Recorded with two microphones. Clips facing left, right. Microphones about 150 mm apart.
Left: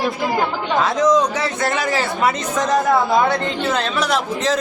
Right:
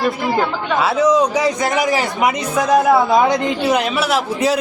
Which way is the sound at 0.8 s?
10° right (ahead or behind).